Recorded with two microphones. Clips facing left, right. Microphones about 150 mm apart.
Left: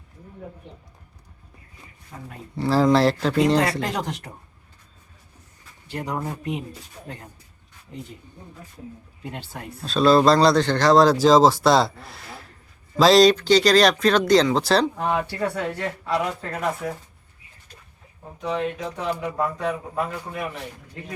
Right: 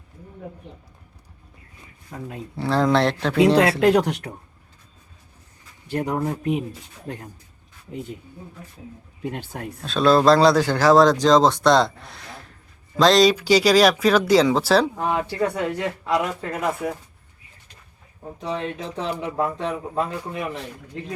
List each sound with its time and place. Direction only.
2.6 s speech: centre (ahead or behind)
3.6 s speech: 65° right (ahead or behind)
5.9 s speech: 55° right (ahead or behind)
9.3 s speech: 50° right (ahead or behind)
9.8 s speech: centre (ahead or behind)
13.3 s speech: 10° right (ahead or behind)
18.9 s speech: 25° right (ahead or behind)